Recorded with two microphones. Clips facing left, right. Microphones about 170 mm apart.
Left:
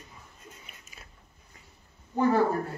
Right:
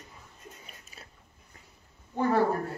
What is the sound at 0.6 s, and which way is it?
Biting, 35° right (ahead or behind).